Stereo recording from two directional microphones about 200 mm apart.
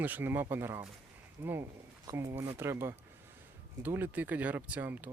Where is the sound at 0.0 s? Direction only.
10° right (ahead or behind).